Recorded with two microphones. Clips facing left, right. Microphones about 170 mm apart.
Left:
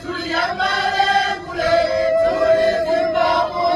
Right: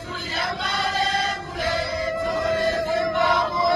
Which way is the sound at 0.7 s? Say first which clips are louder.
Left 4 dB; 90° left.